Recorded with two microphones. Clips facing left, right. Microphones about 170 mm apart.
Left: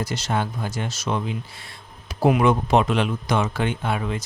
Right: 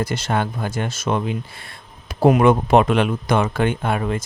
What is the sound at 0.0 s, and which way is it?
Speech, 55° right (ahead or behind).